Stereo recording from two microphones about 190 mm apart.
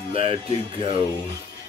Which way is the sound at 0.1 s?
30° right (ahead or behind).